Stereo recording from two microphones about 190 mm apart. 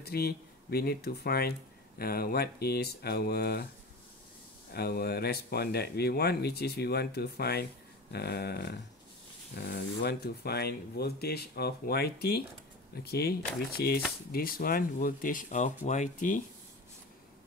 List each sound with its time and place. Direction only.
0.0 s speech: 55° left (ahead or behind)
4.7 s speech: 55° left (ahead or behind)